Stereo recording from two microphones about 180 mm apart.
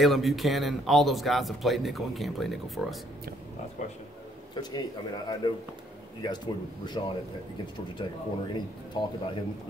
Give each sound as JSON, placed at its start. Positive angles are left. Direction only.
{"t": 0.0, "sound": "speech", "side_deg": 0}
{"t": 4.6, "sound": "speech", "side_deg": 25}